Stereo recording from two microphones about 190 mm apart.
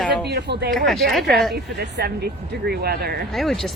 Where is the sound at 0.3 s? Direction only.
60° right (ahead or behind).